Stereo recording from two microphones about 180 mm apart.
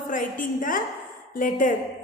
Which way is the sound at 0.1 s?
45° left (ahead or behind).